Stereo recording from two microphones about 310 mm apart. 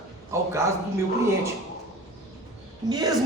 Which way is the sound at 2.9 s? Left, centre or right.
Centre.